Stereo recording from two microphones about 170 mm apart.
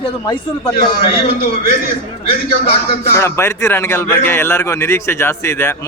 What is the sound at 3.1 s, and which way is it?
A man's voice, 15° left (ahead or behind).